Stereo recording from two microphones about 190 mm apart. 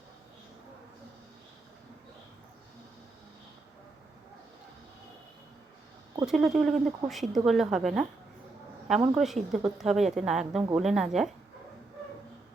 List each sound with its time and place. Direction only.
6.2 s speech: centre (ahead or behind)
9.1 s speech: centre (ahead or behind)